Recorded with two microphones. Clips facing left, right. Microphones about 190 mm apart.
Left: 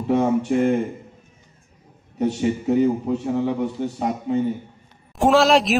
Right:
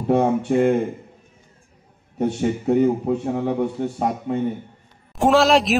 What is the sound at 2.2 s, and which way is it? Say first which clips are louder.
A man's voice: even; 55° right (ahead or behind).